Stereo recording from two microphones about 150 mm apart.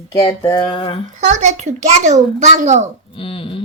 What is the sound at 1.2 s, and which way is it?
A child's voice, 50° right (ahead or behind).